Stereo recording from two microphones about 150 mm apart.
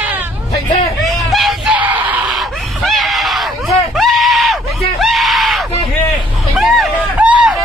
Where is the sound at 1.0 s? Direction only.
Centre (ahead or behind).